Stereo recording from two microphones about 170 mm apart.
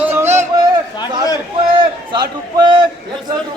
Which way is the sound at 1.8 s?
25° right (ahead or behind).